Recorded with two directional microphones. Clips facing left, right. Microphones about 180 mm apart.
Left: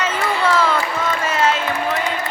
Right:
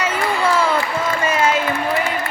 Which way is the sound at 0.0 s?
10° right (ahead or behind).